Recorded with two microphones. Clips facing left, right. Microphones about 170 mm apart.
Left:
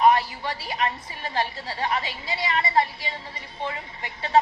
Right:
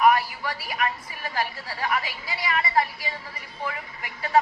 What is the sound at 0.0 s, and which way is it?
A woman's voice, 25° left (ahead or behind).